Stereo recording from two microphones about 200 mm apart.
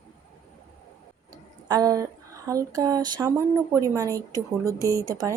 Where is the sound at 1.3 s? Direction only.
20° right (ahead or behind).